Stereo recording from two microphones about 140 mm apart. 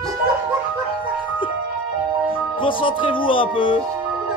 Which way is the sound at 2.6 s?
35° left (ahead or behind).